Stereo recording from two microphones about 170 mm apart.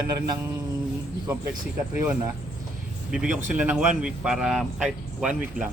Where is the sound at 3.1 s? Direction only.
5° right (ahead or behind).